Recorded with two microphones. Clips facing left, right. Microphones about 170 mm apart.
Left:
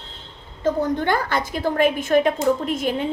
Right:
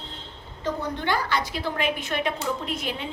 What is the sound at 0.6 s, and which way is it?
A woman's voice, 50° left (ahead or behind).